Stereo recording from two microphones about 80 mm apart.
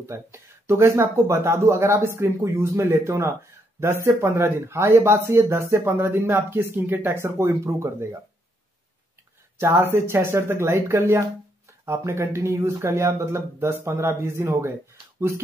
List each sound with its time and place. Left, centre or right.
0.0 s speech: right
9.6 s speech: right